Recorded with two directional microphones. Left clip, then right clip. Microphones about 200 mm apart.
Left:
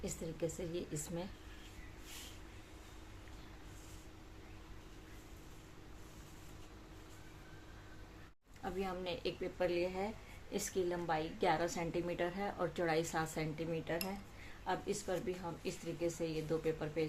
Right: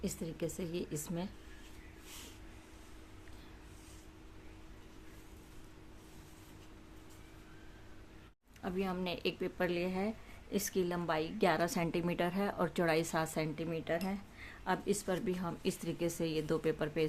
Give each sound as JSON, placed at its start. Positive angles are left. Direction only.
{"t": 0.0, "sound": "a woman's voice", "side_deg": -30}
{"t": 8.6, "sound": "a woman's voice", "side_deg": -30}